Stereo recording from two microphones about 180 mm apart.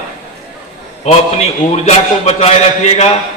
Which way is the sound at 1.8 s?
35° left (ahead or behind).